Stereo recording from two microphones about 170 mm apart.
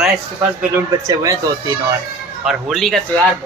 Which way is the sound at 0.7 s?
20° right (ahead or behind).